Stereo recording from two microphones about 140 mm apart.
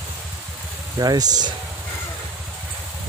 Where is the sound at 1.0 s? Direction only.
25° right (ahead or behind).